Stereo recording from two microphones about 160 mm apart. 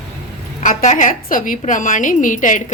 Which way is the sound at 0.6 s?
50° left (ahead or behind).